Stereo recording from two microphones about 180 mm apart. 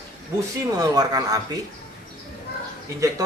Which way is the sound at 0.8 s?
20° right (ahead or behind).